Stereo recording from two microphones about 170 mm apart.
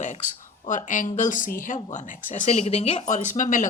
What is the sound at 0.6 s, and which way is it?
A woman's voice, 50° left (ahead or behind).